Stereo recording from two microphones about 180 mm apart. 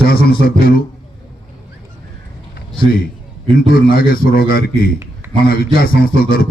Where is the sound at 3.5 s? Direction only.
55° left (ahead or behind).